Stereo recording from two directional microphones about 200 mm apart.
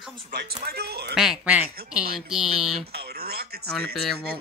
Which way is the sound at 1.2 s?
5° right (ahead or behind).